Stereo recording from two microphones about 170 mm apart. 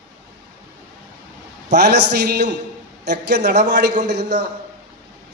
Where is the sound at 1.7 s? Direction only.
80° right.